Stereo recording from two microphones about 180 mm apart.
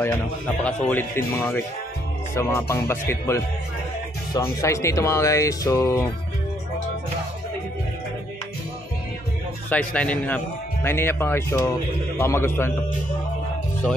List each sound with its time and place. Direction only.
0.7 s speech: 10° left (ahead or behind)
9.7 s speech: 5° left (ahead or behind)